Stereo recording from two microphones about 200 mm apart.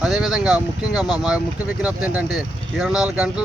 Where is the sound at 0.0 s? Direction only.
Centre (ahead or behind).